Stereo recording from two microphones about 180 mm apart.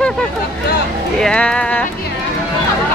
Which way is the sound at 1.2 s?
5° left (ahead or behind).